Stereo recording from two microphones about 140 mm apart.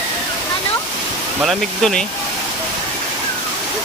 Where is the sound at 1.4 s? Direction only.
5° left (ahead or behind).